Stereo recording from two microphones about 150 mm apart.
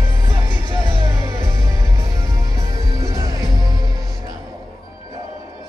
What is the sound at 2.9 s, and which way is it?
Music, 25° right (ahead or behind).